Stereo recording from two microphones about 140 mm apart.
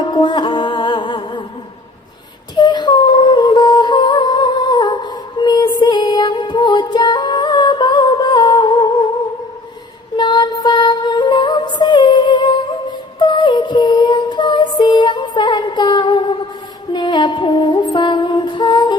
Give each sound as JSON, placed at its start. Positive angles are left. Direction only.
{"t": 0.1, "sound": "music", "side_deg": 35}
{"t": 2.6, "sound": "music", "side_deg": 30}
{"t": 10.2, "sound": "music", "side_deg": 30}